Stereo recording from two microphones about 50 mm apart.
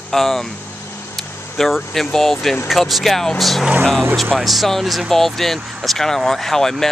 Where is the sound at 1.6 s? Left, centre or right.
Centre.